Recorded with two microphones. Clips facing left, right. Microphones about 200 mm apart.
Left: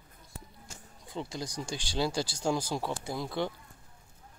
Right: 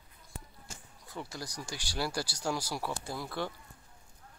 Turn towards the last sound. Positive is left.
turn(degrees=20)  # may be behind; listen again after turning